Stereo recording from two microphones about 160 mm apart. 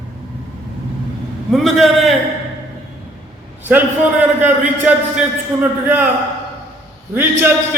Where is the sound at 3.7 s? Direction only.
10° right (ahead or behind).